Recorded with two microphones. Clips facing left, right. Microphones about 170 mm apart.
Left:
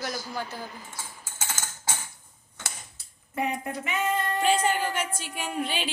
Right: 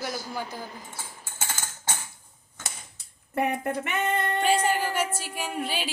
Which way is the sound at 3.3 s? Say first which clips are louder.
Right 3 dB; 55° right (ahead or behind).